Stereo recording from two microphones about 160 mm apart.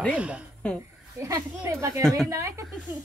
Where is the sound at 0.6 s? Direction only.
10° left (ahead or behind).